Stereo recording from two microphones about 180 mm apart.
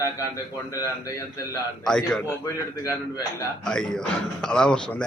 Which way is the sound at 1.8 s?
5° left (ahead or behind).